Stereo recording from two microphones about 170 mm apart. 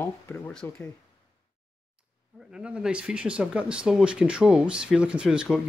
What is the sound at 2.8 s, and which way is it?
Speech, 5° right (ahead or behind).